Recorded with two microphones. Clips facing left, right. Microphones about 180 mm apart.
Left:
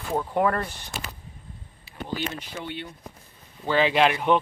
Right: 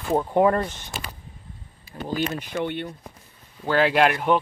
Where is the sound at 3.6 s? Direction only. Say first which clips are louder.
Right 1 dB; 10° right (ahead or behind).